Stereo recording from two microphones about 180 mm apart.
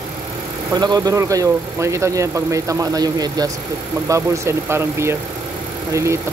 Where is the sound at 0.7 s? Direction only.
20° right (ahead or behind).